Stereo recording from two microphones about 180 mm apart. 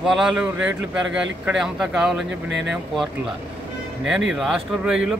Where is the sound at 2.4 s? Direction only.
80° right.